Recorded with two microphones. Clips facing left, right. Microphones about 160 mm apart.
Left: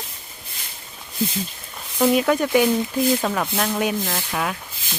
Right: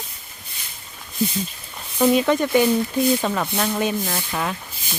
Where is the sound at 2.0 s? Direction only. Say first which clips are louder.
Right 1 dB; 5° left (ahead or behind).